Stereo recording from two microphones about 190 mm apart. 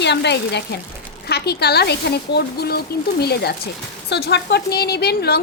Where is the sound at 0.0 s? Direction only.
65° left (ahead or behind).